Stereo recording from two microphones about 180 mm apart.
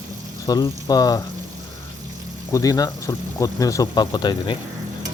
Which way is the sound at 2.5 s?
20° left (ahead or behind).